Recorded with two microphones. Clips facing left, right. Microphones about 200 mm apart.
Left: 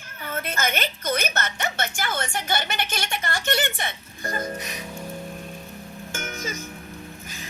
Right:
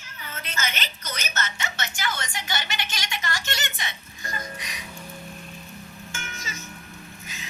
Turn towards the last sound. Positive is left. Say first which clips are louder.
# left 4 dB
turn(degrees=55)  # may be behind; listen again after turning